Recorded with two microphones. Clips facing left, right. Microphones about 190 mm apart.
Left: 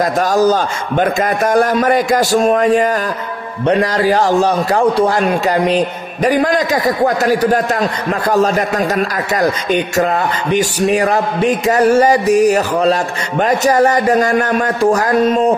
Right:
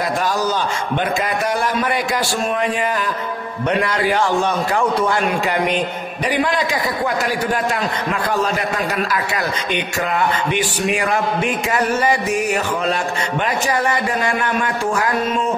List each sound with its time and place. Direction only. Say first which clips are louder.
0.0 s a man's voice: left 7 dB; 45° left (ahead or behind)